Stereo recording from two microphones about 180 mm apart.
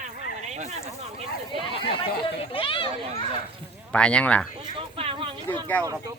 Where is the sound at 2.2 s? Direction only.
30° left (ahead or behind).